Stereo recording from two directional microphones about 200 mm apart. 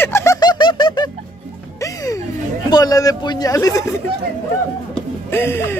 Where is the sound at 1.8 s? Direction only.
15° left (ahead or behind).